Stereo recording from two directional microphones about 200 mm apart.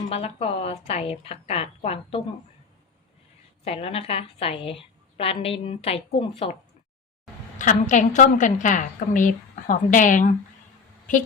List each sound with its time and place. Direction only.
0.1 s a woman's voice: 30° left (ahead or behind)
3.6 s a woman's voice: 30° left (ahead or behind)
7.6 s a woman's voice: 40° left (ahead or behind)